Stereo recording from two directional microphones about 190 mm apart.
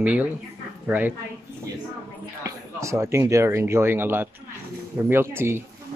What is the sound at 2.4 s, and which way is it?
A man's voice, 15° right (ahead or behind).